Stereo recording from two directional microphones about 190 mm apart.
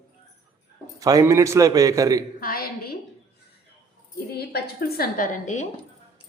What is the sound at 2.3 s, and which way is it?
Speech, 50° left (ahead or behind).